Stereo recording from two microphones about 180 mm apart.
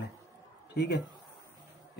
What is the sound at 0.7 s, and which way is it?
Speech, 75° left (ahead or behind).